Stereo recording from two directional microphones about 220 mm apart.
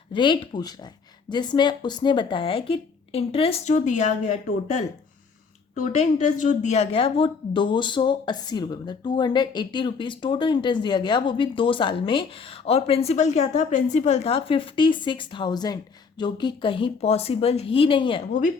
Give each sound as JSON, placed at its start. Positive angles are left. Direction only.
{"t": 0.1, "sound": "a woman's voice", "side_deg": 20}